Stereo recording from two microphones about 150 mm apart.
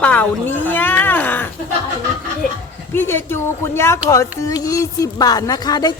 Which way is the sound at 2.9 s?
15° left (ahead or behind).